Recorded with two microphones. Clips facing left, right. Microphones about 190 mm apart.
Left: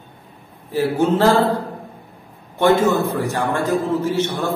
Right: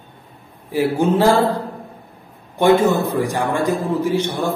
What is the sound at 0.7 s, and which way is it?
Speech, 15° right (ahead or behind).